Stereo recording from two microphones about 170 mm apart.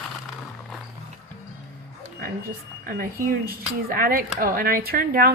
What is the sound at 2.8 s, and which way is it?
Speech, 60° right (ahead or behind).